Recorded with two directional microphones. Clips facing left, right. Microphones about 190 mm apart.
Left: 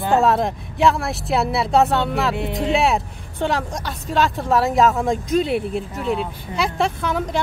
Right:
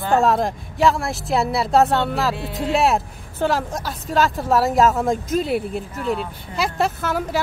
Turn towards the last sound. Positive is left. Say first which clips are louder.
# even
turn(degrees=-5)  # may be behind; listen again after turning